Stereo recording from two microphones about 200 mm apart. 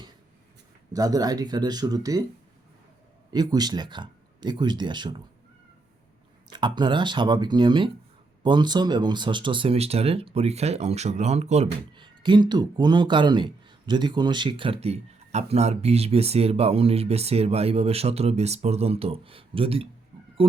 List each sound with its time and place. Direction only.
0.9 s speech: 20° right (ahead or behind)
3.3 s speech: 20° right (ahead or behind)
6.5 s speech: 20° right (ahead or behind)